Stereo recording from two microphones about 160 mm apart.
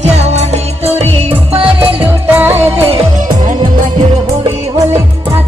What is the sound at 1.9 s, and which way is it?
Music, 10° right (ahead or behind).